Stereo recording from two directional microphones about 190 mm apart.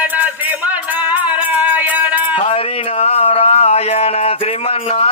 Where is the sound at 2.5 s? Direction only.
30° left (ahead or behind).